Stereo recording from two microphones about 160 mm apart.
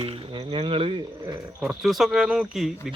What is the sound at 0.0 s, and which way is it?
Speech, 35° right (ahead or behind).